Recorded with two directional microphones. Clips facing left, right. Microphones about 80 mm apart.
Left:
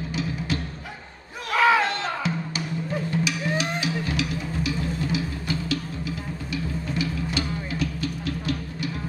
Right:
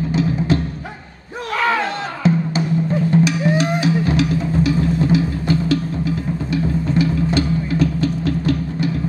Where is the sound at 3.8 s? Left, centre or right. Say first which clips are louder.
Right 10 dB; right.